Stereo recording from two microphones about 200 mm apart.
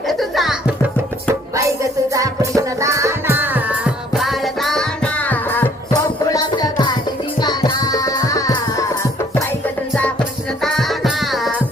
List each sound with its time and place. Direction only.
0.1 s music: centre (ahead or behind)
1.5 s music: 15° right (ahead or behind); by 8.9 s 15° left (ahead or behind)
9.9 s music: 5° left (ahead or behind)